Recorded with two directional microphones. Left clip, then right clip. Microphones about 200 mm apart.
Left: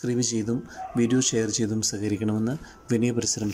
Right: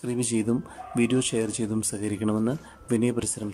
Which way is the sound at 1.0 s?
5° right (ahead or behind).